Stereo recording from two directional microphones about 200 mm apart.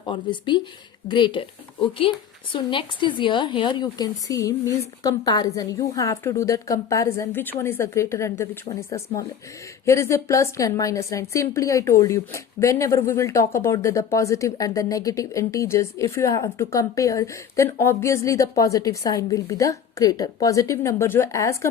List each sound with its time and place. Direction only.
0.0 s a woman's voice: 25° left (ahead or behind)